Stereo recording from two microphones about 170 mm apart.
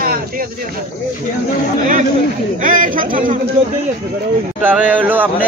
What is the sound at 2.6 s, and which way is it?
Speech, 50° right (ahead or behind).